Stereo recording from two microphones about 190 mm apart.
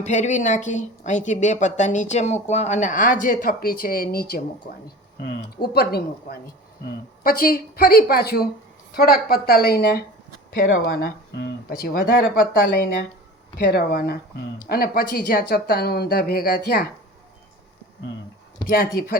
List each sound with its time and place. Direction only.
0.0 s speech: 40° left (ahead or behind)
5.6 s speech: 55° left (ahead or behind)
18.7 s speech: 50° left (ahead or behind)